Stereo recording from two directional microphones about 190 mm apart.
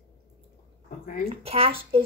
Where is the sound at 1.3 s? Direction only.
30° right (ahead or behind).